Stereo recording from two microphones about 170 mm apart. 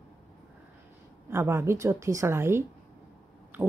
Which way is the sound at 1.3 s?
15° right (ahead or behind).